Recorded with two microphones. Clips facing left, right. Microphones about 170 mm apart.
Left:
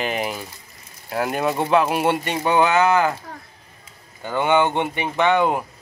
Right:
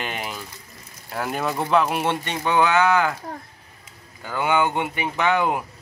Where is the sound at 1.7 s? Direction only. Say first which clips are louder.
Left 2 dB; 5° left (ahead or behind).